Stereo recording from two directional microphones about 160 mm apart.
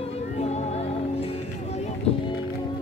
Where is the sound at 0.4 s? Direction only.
45° left (ahead or behind).